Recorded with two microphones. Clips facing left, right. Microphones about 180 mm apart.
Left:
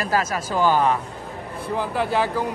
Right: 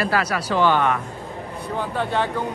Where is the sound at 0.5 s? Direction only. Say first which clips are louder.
Even; 40° left (ahead or behind).